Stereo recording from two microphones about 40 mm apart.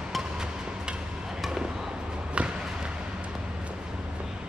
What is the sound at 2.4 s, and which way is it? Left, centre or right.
Basketball bounce, right.